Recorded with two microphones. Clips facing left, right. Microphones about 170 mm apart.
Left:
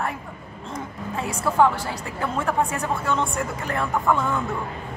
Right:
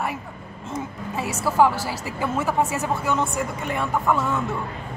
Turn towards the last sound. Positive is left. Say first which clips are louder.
# even
turn(degrees=-5)  # may be behind; listen again after turning